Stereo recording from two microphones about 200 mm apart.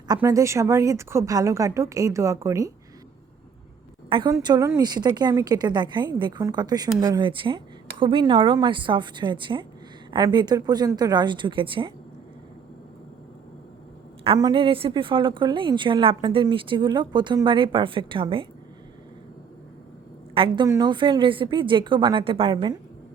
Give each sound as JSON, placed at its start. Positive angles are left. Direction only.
{"t": 0.1, "sound": "a woman's voice", "side_deg": -15}
{"t": 4.1, "sound": "a woman's voice", "side_deg": -20}
{"t": 14.3, "sound": "a woman's voice", "side_deg": -20}
{"t": 20.3, "sound": "a woman's voice", "side_deg": -25}